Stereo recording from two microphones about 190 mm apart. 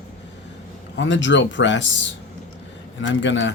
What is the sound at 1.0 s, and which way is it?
Speech, 75° left (ahead or behind).